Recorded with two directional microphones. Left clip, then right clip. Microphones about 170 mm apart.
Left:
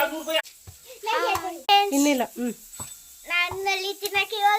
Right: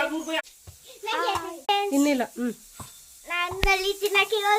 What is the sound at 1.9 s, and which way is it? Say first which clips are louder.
Speech: left 1 dB; 5° left (ahead or behind).